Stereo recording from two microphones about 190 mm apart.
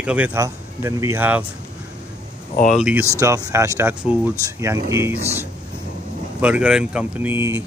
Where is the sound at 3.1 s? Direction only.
15° right (ahead or behind).